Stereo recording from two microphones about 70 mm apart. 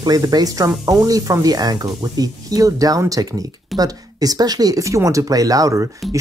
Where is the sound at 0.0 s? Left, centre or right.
Right.